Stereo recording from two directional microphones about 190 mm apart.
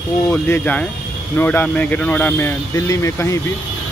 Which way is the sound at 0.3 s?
10° left (ahead or behind).